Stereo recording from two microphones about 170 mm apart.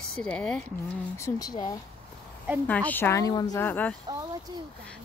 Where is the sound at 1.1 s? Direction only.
20° left (ahead or behind).